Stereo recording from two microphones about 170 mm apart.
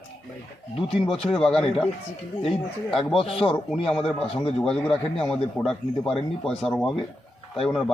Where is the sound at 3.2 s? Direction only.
35° left (ahead or behind).